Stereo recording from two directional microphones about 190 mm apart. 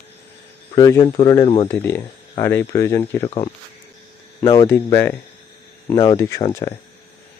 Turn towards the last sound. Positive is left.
turn(degrees=15)  # may be behind; listen again after turning